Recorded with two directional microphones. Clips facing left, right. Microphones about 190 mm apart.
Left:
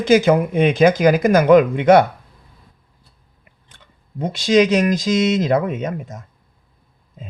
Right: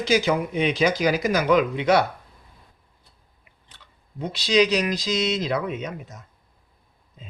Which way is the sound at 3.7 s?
50° left (ahead or behind).